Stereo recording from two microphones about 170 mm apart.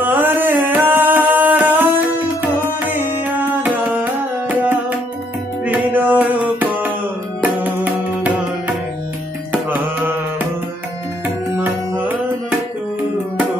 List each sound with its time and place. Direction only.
0.0 s music: 10° right (ahead or behind)
5.9 s music: 10° right (ahead or behind)
9.7 s mantra: 10° right (ahead or behind)
11.2 s music: 10° right (ahead or behind)